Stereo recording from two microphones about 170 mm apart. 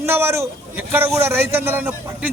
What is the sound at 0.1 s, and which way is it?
Speech, 15° right (ahead or behind).